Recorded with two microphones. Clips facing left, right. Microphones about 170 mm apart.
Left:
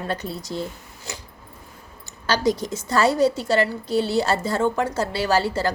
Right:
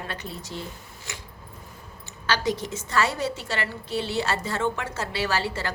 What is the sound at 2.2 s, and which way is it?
A woman's voice, 40° left (ahead or behind).